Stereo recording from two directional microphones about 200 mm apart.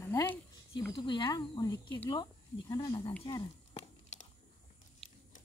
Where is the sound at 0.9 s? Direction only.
25° left (ahead or behind).